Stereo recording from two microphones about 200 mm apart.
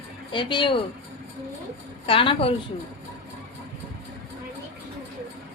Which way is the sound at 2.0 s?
25° left (ahead or behind).